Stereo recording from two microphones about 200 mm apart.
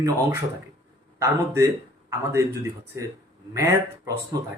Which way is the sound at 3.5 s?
15° right (ahead or behind).